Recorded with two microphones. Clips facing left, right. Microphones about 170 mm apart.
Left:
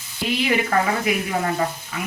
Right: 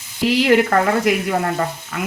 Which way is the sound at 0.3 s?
85° right.